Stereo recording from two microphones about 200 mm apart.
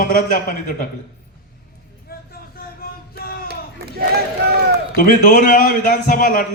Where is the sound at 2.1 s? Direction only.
50° left (ahead or behind).